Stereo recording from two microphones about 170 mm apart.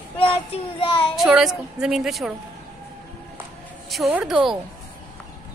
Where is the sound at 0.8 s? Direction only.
30° left (ahead or behind).